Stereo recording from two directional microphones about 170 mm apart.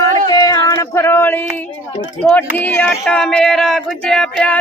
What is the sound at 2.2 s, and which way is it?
Speech, 10° left (ahead or behind).